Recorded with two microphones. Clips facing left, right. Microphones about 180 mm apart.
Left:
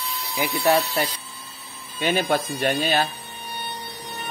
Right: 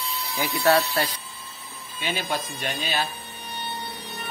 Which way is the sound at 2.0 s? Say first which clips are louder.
Left 7 dB; 55° left (ahead or behind).